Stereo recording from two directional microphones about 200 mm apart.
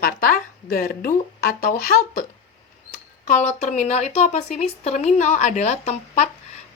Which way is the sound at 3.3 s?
35° left (ahead or behind).